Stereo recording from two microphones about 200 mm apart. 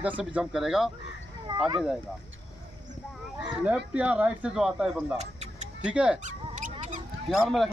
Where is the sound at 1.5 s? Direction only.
20° right (ahead or behind).